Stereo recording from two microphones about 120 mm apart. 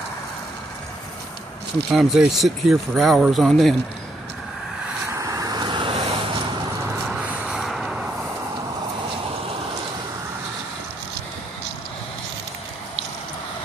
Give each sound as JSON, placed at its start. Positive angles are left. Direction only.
{"t": 1.9, "sound": "speech", "side_deg": 0}
{"t": 5.1, "sound": "vehicle", "side_deg": -25}
{"t": 7.1, "sound": "vehicle", "side_deg": -10}